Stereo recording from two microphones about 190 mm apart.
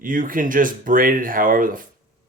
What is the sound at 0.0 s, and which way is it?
Speech, 45° right (ahead or behind).